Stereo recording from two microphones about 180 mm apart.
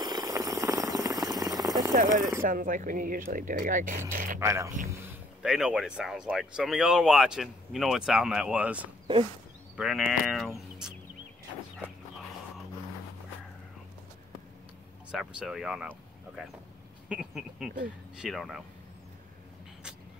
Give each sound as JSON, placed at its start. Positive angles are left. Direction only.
{"t": 0.0, "sound": "a sound", "side_deg": -20}
{"t": 2.4, "sound": "speech", "side_deg": -50}
{"t": 4.1, "sound": "a sound", "side_deg": -50}
{"t": 4.4, "sound": "speech", "side_deg": -15}
{"t": 5.4, "sound": "speech", "side_deg": -5}
{"t": 15.0, "sound": "speech", "side_deg": -5}
{"t": 17.1, "sound": "speech", "side_deg": -5}